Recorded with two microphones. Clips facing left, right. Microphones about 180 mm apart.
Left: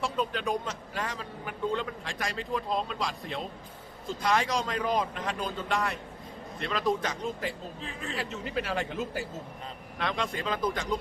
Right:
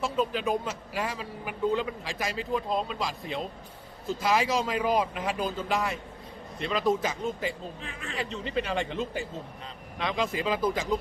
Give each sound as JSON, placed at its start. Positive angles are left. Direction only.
{"t": 0.0, "sound": "a man's voice", "side_deg": -5}
{"t": 7.8, "sound": "speech", "side_deg": 35}
{"t": 8.1, "sound": "a man's voice", "side_deg": 5}